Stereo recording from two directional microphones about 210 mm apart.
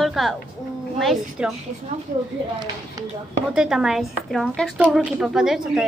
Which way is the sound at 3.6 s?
5° right (ahead or behind).